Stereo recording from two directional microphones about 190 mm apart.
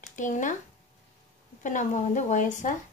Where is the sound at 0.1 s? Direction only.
40° left (ahead or behind).